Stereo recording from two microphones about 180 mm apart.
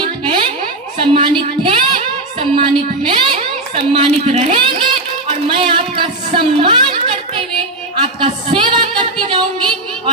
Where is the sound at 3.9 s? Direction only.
35° right (ahead or behind).